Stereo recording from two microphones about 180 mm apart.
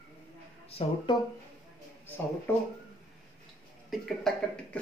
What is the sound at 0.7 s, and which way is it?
Speech, 25° left (ahead or behind).